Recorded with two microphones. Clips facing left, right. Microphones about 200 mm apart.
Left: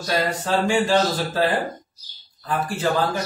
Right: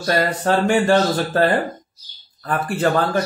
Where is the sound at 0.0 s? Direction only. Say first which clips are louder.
Right 4 dB; 55° right (ahead or behind).